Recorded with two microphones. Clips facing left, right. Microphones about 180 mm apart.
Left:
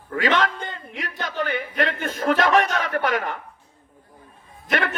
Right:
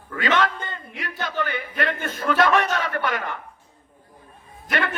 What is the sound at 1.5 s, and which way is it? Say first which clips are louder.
A man's voice: left 2 dB; 45° left (ahead or behind).